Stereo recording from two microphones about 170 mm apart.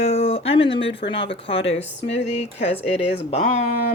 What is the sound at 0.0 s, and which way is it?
Speech, 35° left (ahead or behind).